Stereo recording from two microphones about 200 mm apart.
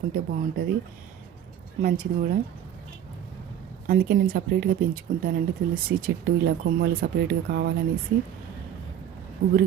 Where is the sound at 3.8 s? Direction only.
45° right (ahead or behind).